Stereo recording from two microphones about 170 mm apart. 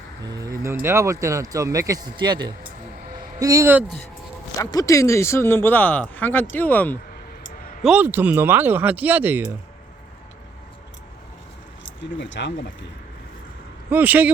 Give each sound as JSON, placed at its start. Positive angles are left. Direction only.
{"t": 0.3, "sound": "speech", "side_deg": -20}
{"t": 4.5, "sound": "speech", "side_deg": 20}
{"t": 7.8, "sound": "speech", "side_deg": -5}
{"t": 12.2, "sound": "speech", "side_deg": 90}
{"t": 13.9, "sound": "speech", "side_deg": -10}